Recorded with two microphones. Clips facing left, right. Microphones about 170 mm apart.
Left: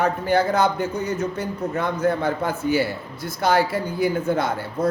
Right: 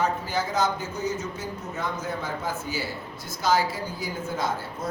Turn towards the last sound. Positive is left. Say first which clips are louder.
# left 5 dB
turn(degrees=60)  # may be behind; listen again after turning